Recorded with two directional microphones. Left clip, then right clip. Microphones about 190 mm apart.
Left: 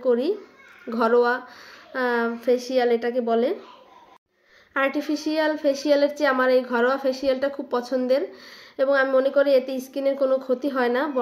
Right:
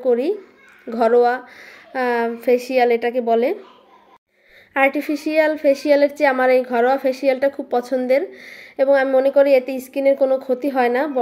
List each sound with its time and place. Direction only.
0.0 s a child's voice: 15° right (ahead or behind)
4.7 s a woman's voice: 15° right (ahead or behind)